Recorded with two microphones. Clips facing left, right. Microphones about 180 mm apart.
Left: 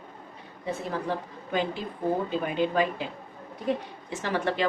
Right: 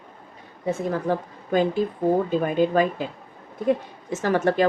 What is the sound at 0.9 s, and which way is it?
A woman's voice, 45° right (ahead or behind).